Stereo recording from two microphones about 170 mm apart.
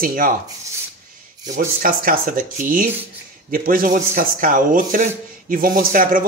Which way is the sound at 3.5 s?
55° right (ahead or behind).